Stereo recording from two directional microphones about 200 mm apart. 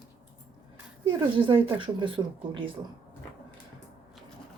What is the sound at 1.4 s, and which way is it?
A woman's voice, 25° right (ahead or behind).